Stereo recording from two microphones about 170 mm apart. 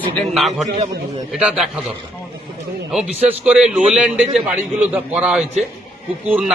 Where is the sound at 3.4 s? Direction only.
5° right (ahead or behind).